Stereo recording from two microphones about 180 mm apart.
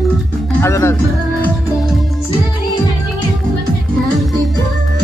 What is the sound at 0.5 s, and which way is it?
Speech, 15° left (ahead or behind).